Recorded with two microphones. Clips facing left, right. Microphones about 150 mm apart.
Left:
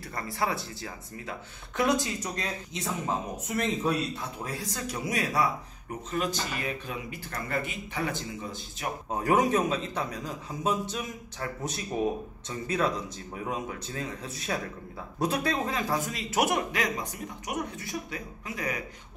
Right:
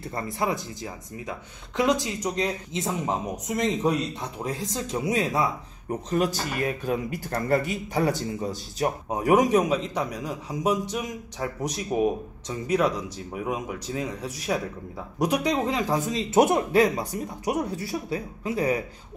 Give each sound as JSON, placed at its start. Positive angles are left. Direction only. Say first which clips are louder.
{"t": 0.0, "sound": "speech", "louder": "right 3 dB", "side_deg": -20}
{"t": 6.0, "sound": "a man's voice", "louder": "right 5 dB", "side_deg": -40}
{"t": 9.1, "sound": "a man's voice", "louder": "right 4 dB", "side_deg": -15}